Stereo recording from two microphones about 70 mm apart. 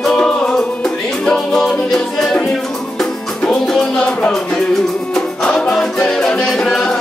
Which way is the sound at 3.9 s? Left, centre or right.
Centre.